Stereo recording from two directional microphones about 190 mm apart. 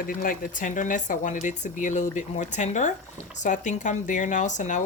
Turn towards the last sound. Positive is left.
turn(degrees=40)  # may be behind; listen again after turning